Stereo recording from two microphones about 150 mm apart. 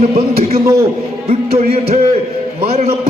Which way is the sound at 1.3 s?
40° right (ahead or behind).